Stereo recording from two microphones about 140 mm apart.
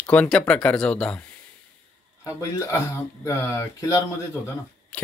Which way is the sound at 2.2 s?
20° left (ahead or behind).